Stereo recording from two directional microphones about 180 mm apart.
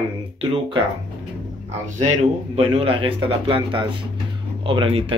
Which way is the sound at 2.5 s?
30° right (ahead or behind).